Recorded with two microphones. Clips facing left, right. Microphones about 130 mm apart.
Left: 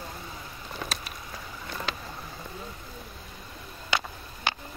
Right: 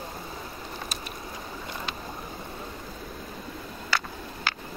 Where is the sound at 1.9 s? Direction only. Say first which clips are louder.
Left 2 dB; 90° left.